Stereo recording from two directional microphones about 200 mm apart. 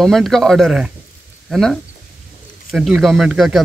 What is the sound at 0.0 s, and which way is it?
Speech, centre (ahead or behind).